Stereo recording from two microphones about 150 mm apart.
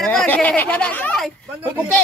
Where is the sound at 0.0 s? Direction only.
5° left (ahead or behind).